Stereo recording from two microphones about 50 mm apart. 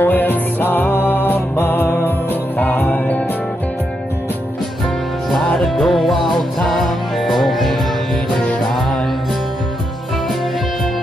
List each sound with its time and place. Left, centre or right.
0.0 s music: left
5.6 s music: centre